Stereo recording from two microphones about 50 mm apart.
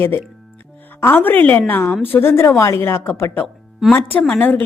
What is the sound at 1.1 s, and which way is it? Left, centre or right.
A woman's voice, left.